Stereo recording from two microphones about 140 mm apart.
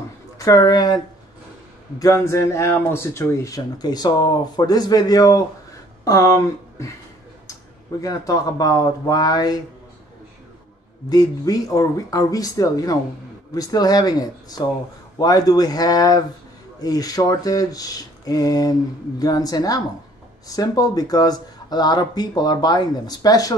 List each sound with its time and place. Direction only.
0.4 s speech: 25° left (ahead or behind)
8.0 s speech: 25° left (ahead or behind)
11.1 s speech: 25° left (ahead or behind)